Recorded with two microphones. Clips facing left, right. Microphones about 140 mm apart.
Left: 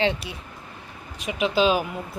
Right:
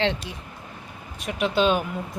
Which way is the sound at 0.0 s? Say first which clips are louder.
Left 1 dB; 5° left (ahead or behind).